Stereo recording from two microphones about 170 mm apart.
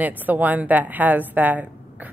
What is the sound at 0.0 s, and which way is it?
A woman's voice, 10° right (ahead or behind).